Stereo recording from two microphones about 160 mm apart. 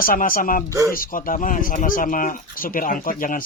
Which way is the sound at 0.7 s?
20° right (ahead or behind).